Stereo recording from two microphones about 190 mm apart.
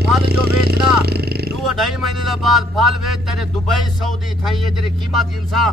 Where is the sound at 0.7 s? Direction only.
55° right (ahead or behind).